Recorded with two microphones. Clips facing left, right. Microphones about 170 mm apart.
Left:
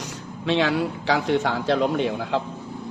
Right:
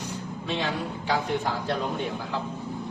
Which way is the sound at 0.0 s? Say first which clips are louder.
Left 3 dB; 85° left.